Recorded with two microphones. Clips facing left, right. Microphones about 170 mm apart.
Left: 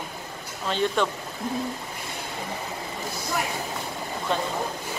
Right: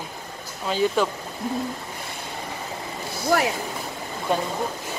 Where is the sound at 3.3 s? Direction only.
90° right.